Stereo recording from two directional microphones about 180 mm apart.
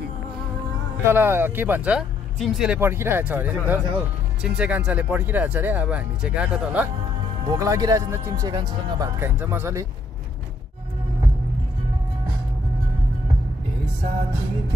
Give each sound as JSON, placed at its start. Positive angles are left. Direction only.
{"t": 1.0, "sound": "speech", "side_deg": -10}
{"t": 7.5, "sound": "speech", "side_deg": -20}